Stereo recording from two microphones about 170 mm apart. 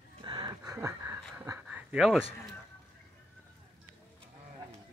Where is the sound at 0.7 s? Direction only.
15° right (ahead or behind).